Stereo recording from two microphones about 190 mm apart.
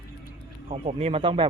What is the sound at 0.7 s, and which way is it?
Speech, 35° right (ahead or behind).